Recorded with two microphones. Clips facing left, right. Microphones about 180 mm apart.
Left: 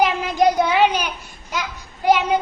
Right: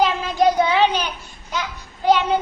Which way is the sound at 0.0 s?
15° left (ahead or behind).